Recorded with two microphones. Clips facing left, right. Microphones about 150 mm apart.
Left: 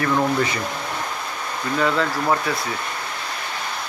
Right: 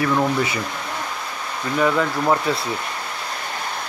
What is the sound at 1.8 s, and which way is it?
Speech, 15° right (ahead or behind).